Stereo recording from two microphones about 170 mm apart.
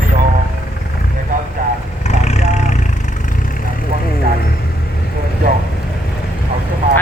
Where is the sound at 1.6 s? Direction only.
50° right (ahead or behind).